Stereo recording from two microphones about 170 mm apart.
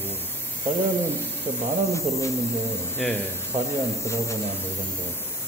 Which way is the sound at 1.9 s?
15° left (ahead or behind).